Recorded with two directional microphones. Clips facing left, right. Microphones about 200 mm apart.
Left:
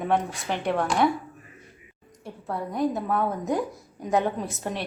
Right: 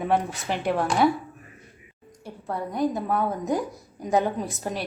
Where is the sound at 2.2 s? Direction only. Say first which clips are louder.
Right 1 dB; centre (ahead or behind).